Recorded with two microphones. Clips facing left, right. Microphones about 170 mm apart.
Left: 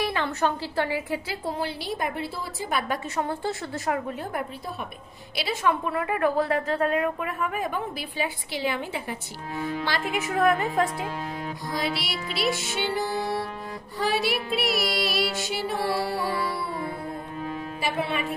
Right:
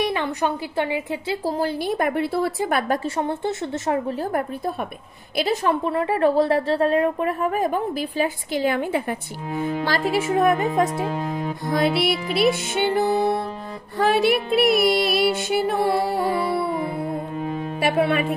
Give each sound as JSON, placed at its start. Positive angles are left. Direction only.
{"t": 0.0, "sound": "speech", "side_deg": -15}
{"t": 1.6, "sound": "music", "side_deg": -55}
{"t": 3.2, "sound": "speech", "side_deg": -20}
{"t": 4.2, "sound": "music", "side_deg": -45}
{"t": 5.3, "sound": "a woman's voice", "side_deg": -40}
{"t": 11.7, "sound": "music", "side_deg": -55}
{"t": 15.8, "sound": "speech", "side_deg": -20}
{"t": 17.7, "sound": "a woman's voice", "side_deg": -60}